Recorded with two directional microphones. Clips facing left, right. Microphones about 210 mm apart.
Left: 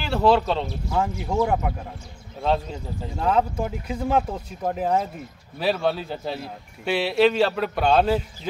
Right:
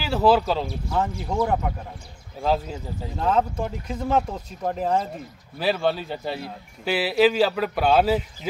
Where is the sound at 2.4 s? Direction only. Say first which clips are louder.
Even; 5° right (ahead or behind).